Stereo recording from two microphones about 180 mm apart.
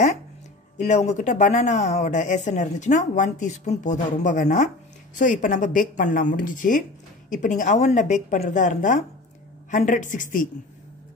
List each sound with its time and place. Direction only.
0.7 s a woman's voice: 40° left (ahead or behind)